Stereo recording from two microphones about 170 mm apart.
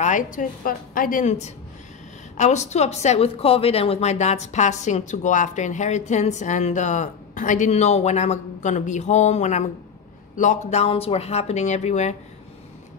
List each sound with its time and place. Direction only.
0.0 s speech: 50° left (ahead or behind)